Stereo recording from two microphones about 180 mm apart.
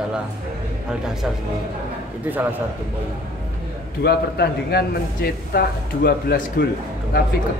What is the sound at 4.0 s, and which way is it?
Speech, 65° left (ahead or behind).